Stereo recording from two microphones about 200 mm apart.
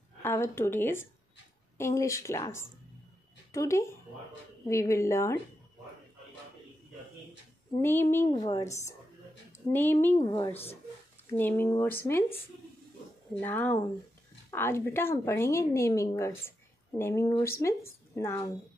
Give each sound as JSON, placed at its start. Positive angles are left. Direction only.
{"t": 0.2, "sound": "a woman's voice", "side_deg": 10}
{"t": 7.8, "sound": "a woman's voice", "side_deg": 10}
{"t": 8.3, "sound": "a woman's voice", "side_deg": 20}
{"t": 11.2, "sound": "a woman's voice", "side_deg": 10}